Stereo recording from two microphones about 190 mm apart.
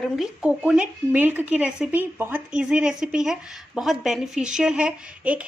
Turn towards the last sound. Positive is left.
turn(degrees=-5)  # may be behind; listen again after turning